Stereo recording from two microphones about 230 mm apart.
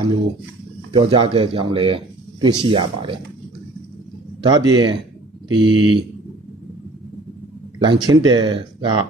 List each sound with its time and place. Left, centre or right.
0.9 s speech: right
4.4 s speech: centre
7.8 s speech: right